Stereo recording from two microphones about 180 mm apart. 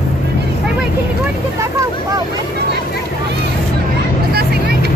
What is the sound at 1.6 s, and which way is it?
Vehicle, 20° right (ahead or behind).